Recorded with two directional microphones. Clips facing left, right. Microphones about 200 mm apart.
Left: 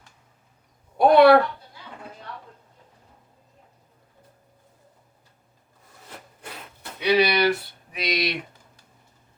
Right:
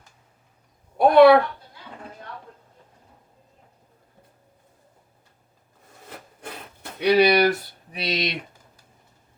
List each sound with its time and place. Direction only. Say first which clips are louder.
0.9 s a woman's voice: right 1 dB; centre (ahead or behind)
7.0 s speech: right 3 dB; 45° right (ahead or behind)
7.9 s speech: even; 25° right (ahead or behind)